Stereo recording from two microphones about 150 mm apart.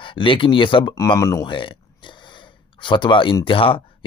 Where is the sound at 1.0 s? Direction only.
20° left (ahead or behind).